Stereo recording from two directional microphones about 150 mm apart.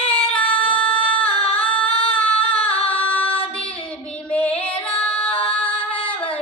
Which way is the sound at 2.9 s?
10° left (ahead or behind).